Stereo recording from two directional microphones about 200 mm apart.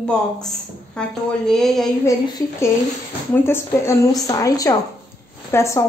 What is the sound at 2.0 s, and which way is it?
A woman's voice, 15° left (ahead or behind).